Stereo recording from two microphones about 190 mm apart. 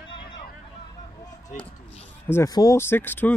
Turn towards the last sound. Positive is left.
turn(degrees=10)  # may be behind; listen again after turning